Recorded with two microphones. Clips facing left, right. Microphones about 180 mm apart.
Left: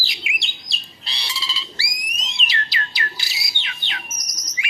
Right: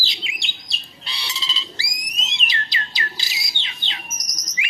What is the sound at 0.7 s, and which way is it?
Bird, 35° left (ahead or behind).